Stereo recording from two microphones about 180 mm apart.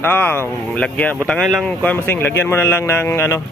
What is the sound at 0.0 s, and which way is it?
Speech, 10° left (ahead or behind).